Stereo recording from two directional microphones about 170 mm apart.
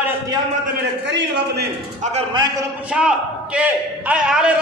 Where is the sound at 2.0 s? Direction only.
40° right (ahead or behind).